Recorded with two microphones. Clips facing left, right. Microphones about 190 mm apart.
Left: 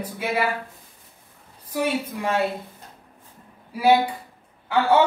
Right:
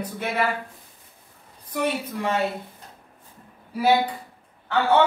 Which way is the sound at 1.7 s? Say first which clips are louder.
Left 1 dB; 10° left (ahead or behind).